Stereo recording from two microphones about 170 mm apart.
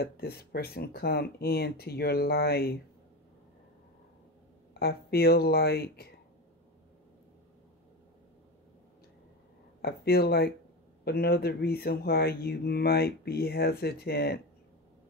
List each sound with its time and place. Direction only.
0.0 s speech: 70° left (ahead or behind)
4.7 s speech: 65° left (ahead or behind)
9.8 s speech: 65° left (ahead or behind)